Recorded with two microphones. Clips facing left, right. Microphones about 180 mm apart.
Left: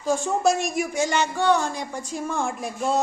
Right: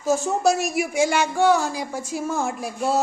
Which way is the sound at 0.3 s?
Centre (ahead or behind).